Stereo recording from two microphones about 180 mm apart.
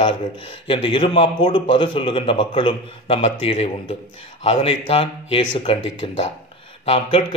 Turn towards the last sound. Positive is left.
turn(degrees=30)  # may be behind; listen again after turning